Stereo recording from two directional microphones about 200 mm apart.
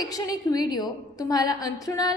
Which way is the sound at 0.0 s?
20° left (ahead or behind).